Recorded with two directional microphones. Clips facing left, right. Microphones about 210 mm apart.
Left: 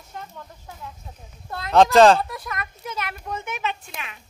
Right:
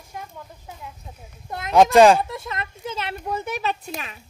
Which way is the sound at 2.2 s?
25° right (ahead or behind).